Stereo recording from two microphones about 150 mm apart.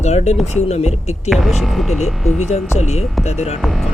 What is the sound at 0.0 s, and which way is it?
Speech, 50° left (ahead or behind).